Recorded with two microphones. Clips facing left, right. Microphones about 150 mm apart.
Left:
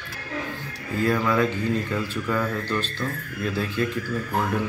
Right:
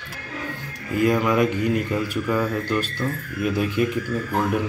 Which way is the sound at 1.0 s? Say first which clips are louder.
Right 3 dB; 15° right (ahead or behind).